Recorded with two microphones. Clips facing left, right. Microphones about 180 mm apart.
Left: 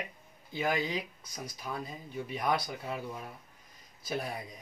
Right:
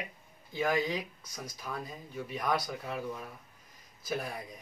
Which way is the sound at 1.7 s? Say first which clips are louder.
Left 1 dB; 15° left (ahead or behind).